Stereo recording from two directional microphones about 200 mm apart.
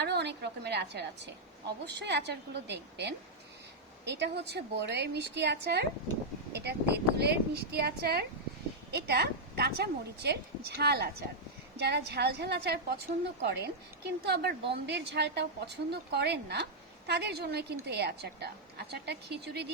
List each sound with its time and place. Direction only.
0.0 s a woman's voice: 55° right (ahead or behind)